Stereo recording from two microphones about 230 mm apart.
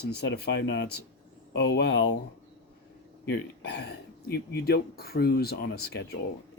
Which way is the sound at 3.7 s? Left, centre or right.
Left.